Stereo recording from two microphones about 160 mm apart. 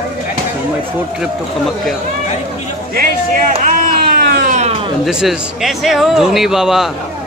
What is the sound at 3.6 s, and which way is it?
Cat, 65° right (ahead or behind).